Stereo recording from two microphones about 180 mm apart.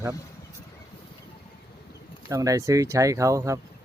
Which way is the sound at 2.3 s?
20° right (ahead or behind).